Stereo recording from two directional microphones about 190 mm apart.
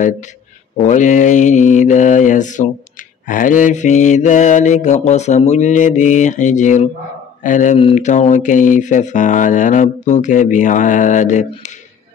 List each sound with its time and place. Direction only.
0.8 s mantra: 40° left (ahead or behind)